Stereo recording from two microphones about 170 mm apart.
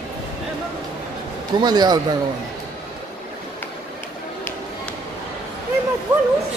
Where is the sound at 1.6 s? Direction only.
25° right (ahead or behind).